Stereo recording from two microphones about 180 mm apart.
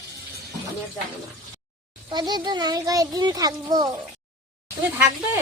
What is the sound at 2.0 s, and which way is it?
Speech, 25° right (ahead or behind).